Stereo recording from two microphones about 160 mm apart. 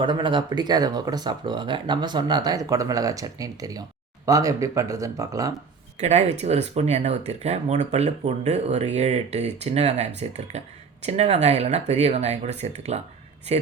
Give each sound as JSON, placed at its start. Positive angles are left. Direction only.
{"t": 0.0, "sound": "speech", "side_deg": -30}
{"t": 6.0, "sound": "speech", "side_deg": -45}